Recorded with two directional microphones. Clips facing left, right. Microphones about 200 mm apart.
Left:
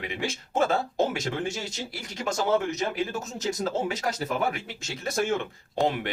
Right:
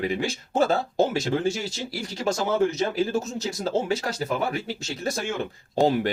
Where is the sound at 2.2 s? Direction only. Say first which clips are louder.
Right 2 dB; 35° right (ahead or behind).